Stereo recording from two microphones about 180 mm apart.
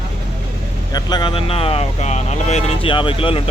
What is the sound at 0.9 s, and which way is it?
Speech, 25° left (ahead or behind).